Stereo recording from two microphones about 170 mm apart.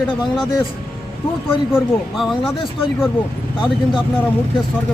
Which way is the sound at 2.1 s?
Centre (ahead or behind).